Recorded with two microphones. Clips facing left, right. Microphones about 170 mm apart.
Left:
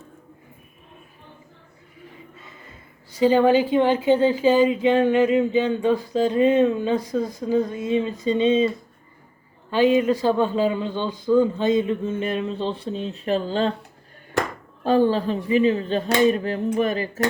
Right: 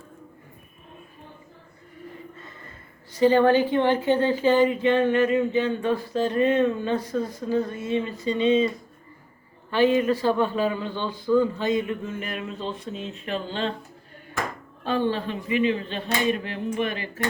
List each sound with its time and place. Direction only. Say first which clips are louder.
3.1 s a woman's voice: left 1 dB; 10° left (ahead or behind); by 13.7 s 40° left (ahead or behind)
14.8 s a woman's voice: left 6 dB; 40° left (ahead or behind)